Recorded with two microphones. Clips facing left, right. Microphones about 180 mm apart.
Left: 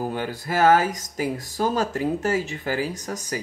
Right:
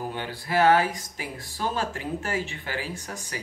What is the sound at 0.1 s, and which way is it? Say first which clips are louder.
Speech: left 2 dB; 45° left (ahead or behind).